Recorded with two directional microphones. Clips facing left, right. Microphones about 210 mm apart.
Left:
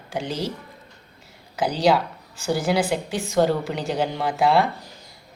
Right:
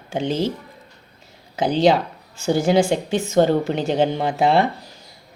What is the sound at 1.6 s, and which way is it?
A woman's voice, 25° right (ahead or behind).